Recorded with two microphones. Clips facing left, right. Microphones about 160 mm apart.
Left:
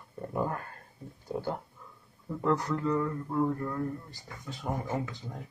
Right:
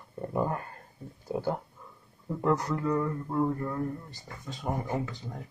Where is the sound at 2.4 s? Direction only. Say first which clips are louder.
Right 1 dB; 20° right (ahead or behind).